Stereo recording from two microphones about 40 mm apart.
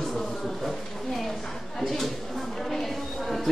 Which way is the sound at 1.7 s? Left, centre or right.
Centre.